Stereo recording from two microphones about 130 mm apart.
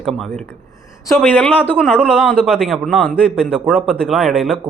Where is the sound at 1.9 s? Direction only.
Centre (ahead or behind).